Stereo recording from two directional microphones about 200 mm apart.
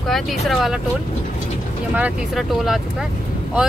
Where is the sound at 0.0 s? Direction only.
Centre (ahead or behind).